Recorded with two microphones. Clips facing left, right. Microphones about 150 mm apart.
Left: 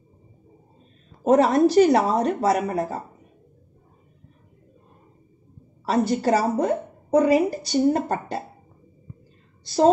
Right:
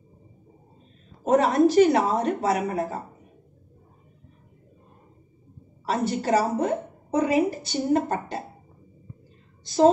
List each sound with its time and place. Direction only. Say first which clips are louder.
1.3 s speech: left 2 dB; 35° left (ahead or behind)
5.9 s speech: left 3 dB; 40° left (ahead or behind)